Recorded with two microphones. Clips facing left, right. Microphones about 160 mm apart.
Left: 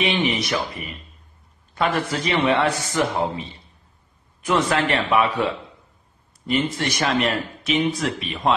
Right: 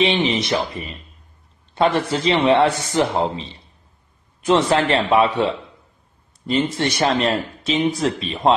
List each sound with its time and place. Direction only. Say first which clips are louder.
0.0 s speech: right 3 dB; 30° right (ahead or behind)